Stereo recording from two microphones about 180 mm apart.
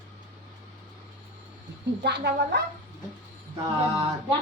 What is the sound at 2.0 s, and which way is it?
Speech, 70° right (ahead or behind).